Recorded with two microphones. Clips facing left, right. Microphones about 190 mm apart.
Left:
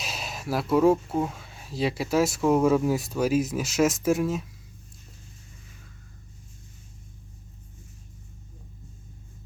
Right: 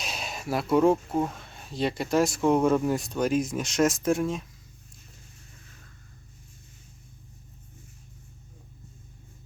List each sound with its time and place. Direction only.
0.0 s speech: centre (ahead or behind)